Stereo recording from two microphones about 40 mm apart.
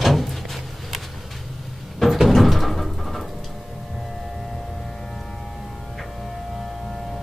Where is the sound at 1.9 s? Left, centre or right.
Centre.